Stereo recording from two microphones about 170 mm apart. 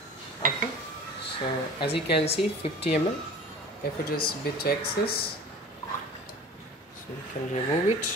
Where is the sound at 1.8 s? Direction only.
30° left (ahead or behind).